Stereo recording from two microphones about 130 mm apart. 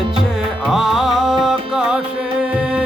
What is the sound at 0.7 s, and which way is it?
Music, centre (ahead or behind).